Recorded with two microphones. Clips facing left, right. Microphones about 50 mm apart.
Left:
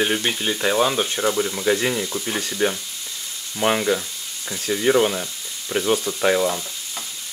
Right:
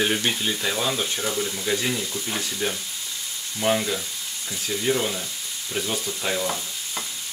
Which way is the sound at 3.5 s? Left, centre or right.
Left.